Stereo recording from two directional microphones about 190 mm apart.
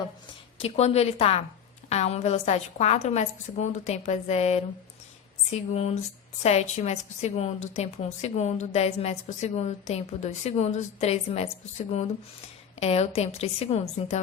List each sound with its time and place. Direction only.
0.6 s a woman's voice: 35° left (ahead or behind)